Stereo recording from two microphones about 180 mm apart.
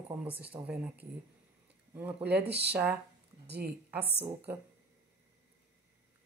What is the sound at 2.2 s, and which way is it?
A woman's voice, 65° right (ahead or behind).